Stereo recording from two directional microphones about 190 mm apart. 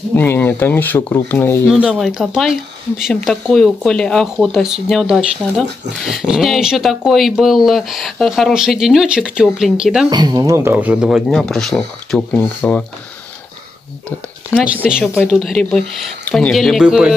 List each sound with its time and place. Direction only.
0.1 s speech: 10° left (ahead or behind)
1.7 s speech: centre (ahead or behind)
10.0 s speech: 20° right (ahead or behind); by 12.8 s 10° left (ahead or behind)
14.0 s speech: 5° right (ahead or behind)